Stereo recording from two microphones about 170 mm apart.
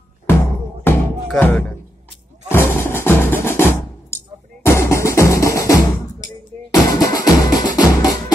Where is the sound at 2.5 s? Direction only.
15° left (ahead or behind).